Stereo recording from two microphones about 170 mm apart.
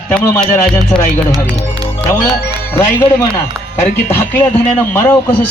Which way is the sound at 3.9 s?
15° left (ahead or behind).